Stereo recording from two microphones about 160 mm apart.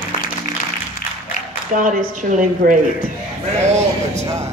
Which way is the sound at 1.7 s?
55° right (ahead or behind).